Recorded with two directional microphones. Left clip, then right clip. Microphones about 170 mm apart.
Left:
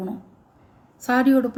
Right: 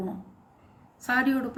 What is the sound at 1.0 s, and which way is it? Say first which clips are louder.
Speech: left 6 dB; 50° left (ahead or behind).